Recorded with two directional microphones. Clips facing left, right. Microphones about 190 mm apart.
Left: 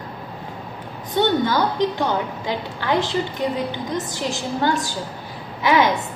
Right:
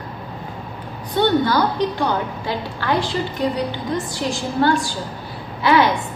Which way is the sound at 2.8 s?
20° left (ahead or behind).